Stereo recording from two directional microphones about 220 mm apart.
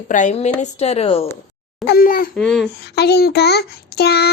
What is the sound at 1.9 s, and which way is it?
Speech, 40° left (ahead or behind).